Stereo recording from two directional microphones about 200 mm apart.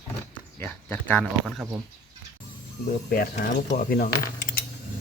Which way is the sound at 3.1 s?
45° left (ahead or behind).